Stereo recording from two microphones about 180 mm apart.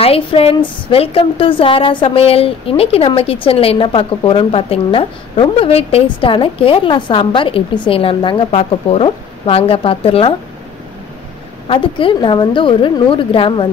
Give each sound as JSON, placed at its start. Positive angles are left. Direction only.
{"t": 0.0, "sound": "a woman's voice", "side_deg": 30}
{"t": 11.6, "sound": "a woman's voice", "side_deg": 30}